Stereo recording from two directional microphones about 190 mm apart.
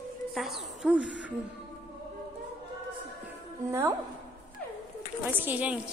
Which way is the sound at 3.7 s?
15° right (ahead or behind).